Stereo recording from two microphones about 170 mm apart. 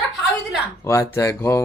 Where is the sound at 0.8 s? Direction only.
15° left (ahead or behind).